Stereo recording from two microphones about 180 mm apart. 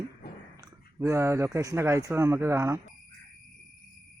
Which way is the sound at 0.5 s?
15° right (ahead or behind).